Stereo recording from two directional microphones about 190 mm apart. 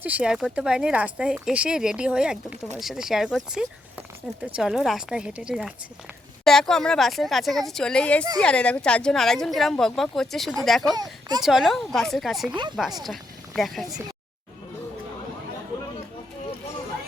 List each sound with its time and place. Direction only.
0.0 s speech: 5° right (ahead or behind)
10.9 s speech: 20° right (ahead or behind)
11.4 s speech: centre (ahead or behind)